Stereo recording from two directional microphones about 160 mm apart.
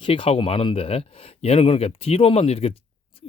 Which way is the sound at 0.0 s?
35° left (ahead or behind).